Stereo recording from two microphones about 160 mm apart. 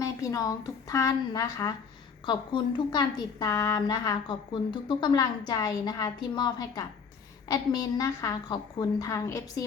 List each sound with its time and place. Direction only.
0.0 s a woman's voice: 20° left (ahead or behind)